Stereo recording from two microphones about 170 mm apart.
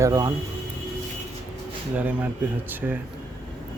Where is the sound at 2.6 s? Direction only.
10° right (ahead or behind).